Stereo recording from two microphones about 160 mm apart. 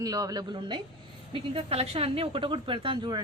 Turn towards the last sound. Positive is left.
turn(degrees=-25)  # may be behind; listen again after turning